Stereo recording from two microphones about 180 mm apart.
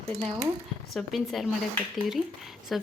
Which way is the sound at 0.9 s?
Centre (ahead or behind).